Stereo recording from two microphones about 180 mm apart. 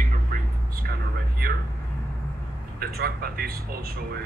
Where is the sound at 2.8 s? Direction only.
55° right (ahead or behind).